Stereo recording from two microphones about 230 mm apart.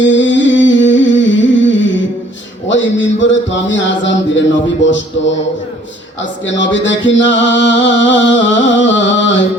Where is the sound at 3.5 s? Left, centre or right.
Left.